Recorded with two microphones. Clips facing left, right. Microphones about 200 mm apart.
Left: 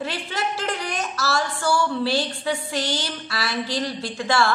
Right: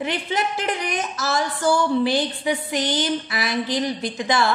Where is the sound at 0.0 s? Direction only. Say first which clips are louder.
Right 3 dB; 20° right (ahead or behind).